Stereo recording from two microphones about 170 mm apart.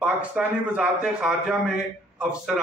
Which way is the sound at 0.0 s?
5° right (ahead or behind).